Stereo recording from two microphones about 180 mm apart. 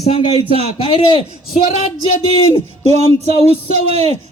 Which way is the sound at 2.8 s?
35° right (ahead or behind).